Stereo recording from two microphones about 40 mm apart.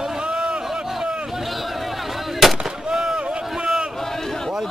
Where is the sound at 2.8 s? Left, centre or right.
Centre.